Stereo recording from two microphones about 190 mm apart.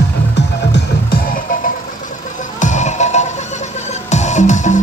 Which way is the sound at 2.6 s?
40° left (ahead or behind).